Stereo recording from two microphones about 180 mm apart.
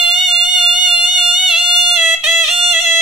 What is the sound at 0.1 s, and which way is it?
Music, centre (ahead or behind).